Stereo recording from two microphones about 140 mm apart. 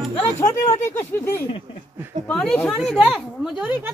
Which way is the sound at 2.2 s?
5° left (ahead or behind).